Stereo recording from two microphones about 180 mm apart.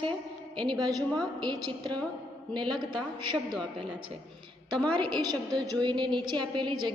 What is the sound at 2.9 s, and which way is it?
Speech, 25° right (ahead or behind).